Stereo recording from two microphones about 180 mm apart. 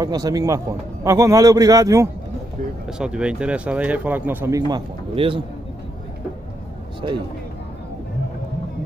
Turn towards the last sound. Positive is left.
turn(degrees=-30)  # may be behind; listen again after turning